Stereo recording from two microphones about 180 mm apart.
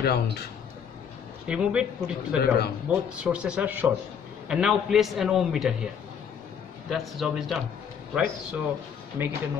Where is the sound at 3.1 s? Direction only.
5° right (ahead or behind).